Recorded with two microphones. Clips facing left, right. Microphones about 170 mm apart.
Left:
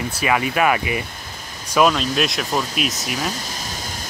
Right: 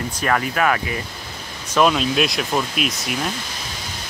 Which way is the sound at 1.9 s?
Centre (ahead or behind).